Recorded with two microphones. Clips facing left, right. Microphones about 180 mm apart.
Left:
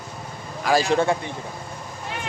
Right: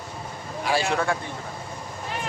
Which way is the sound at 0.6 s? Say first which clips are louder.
Left 5 dB; 40° left (ahead or behind).